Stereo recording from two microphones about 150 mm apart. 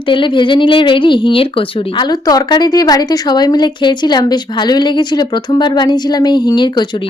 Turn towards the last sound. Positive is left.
turn(degrees=30)  # may be behind; listen again after turning